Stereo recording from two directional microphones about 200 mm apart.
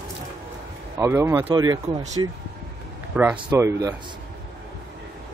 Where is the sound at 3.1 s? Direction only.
5° right (ahead or behind).